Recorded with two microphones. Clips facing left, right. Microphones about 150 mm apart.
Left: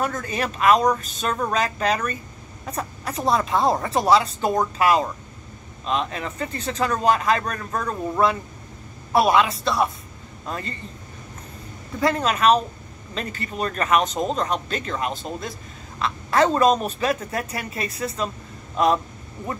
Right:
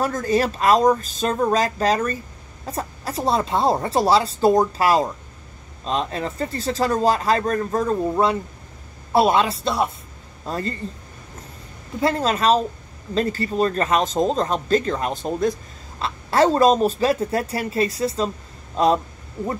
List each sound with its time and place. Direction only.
0.0 s a man's voice: 35° right (ahead or behind)
12.0 s speech: 30° right (ahead or behind)